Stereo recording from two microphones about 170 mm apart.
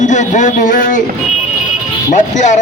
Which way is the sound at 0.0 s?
45° left (ahead or behind).